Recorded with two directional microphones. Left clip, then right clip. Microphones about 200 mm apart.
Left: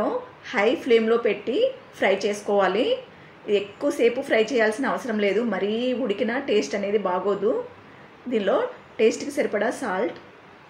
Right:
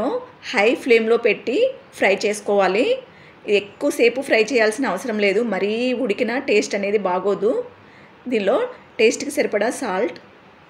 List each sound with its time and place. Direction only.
0.0 s a woman's voice: 40° right (ahead or behind)